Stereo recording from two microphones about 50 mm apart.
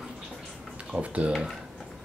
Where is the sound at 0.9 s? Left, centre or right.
Right.